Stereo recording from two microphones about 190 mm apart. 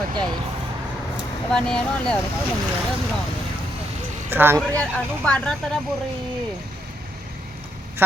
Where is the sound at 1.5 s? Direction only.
5° left (ahead or behind).